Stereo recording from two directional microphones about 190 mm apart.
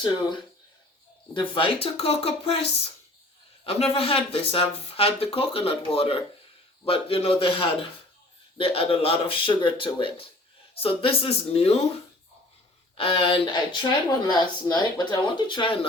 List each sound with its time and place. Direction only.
0.0 s speech: 25° left (ahead or behind)
13.0 s speech: 30° left (ahead or behind)